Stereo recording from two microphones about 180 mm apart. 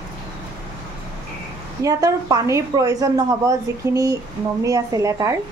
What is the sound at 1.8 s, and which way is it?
A woman's voice, 15° right (ahead or behind).